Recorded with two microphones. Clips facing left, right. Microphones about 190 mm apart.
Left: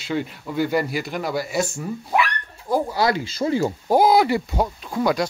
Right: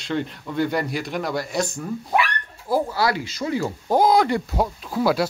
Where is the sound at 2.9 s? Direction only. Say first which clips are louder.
Left 2 dB; 20° left (ahead or behind).